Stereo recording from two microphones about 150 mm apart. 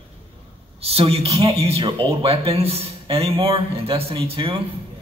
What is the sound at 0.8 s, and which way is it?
Speech, 40° right (ahead or behind).